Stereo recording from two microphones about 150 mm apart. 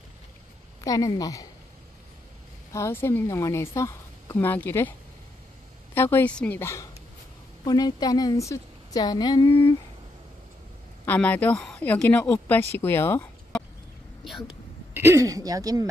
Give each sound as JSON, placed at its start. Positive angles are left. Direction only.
{"t": 0.7, "sound": "a woman's voice", "side_deg": 25}
{"t": 2.7, "sound": "a woman's voice", "side_deg": 15}
{"t": 5.9, "sound": "a woman's voice", "side_deg": 15}
{"t": 11.1, "sound": "a woman's voice", "side_deg": 10}
{"t": 15.0, "sound": "speech", "side_deg": -20}